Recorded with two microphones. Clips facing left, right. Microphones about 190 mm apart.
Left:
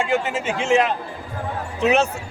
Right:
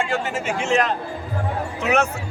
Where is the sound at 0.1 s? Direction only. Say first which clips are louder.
Left 2 dB; 20° left (ahead or behind).